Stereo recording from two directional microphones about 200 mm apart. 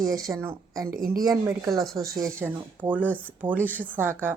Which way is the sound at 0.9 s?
45° right (ahead or behind).